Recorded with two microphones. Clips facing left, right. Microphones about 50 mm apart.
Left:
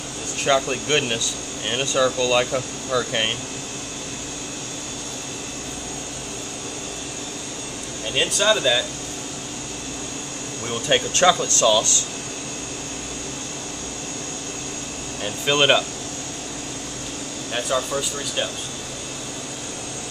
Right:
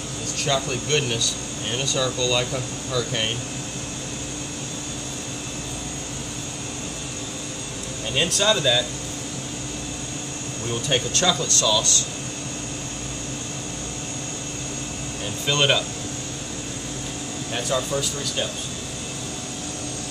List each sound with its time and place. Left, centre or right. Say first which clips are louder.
0.4 s speech: left 4 dB; left
8.1 s speech: left 2 dB; centre
10.7 s speech: left 3 dB; left
15.2 s speech: left 3 dB; left
17.5 s speech: left 1 dB; centre